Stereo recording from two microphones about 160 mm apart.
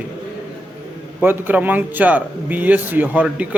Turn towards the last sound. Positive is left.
turn(degrees=-10)  # may be behind; listen again after turning